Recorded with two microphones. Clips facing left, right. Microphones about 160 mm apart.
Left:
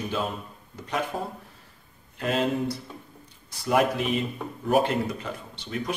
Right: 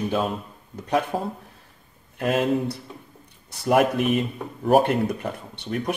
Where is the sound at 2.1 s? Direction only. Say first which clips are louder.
Right 4 dB; 60° right (ahead or behind).